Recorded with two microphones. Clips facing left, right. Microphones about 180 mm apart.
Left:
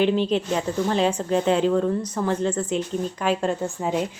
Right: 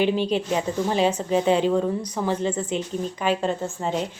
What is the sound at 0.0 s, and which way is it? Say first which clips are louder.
A woman's voice: left 1 dB; 5° right (ahead or behind).